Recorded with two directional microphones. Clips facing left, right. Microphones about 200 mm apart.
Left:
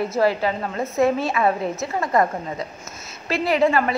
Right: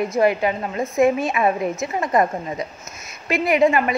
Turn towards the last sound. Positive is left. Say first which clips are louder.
# right 2 dB
turn(degrees=-15)  # may be behind; listen again after turning